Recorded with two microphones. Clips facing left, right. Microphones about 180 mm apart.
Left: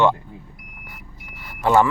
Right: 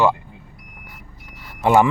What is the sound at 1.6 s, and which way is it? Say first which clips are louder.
Speech: right 1 dB; 15° right (ahead or behind).